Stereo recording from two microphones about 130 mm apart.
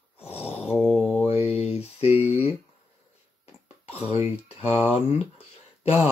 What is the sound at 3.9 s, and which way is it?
Speech, 50° left (ahead or behind).